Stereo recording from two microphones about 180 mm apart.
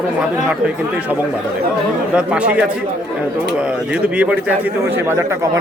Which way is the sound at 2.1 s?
5° right (ahead or behind).